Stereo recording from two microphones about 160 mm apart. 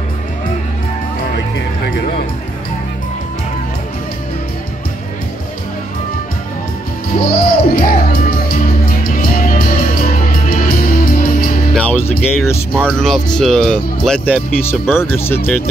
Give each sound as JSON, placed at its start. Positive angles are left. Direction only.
{"t": 7.2, "sound": "music", "side_deg": 65}
{"t": 11.7, "sound": "music", "side_deg": 10}
{"t": 12.8, "sound": "speech", "side_deg": 5}